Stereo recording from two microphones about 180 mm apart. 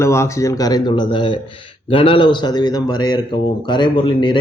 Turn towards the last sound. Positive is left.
turn(degrees=30)  # may be behind; listen again after turning